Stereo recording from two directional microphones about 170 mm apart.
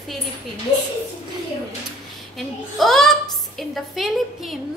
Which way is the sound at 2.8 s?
Centre (ahead or behind).